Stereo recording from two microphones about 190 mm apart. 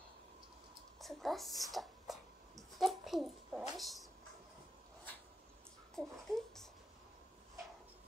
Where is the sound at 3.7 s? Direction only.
Centre (ahead or behind).